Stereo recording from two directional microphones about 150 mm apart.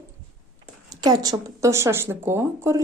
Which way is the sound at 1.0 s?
25° right (ahead or behind).